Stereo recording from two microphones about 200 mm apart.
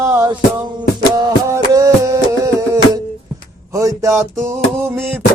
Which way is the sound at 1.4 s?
15° right (ahead or behind).